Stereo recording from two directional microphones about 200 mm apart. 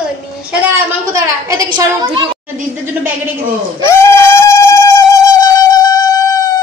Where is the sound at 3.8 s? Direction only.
15° left (ahead or behind).